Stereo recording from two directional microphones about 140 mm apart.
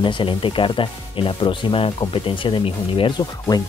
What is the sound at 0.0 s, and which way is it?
Speech, 35° left (ahead or behind).